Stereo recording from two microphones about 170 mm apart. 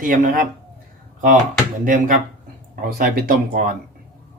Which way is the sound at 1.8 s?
50° right (ahead or behind).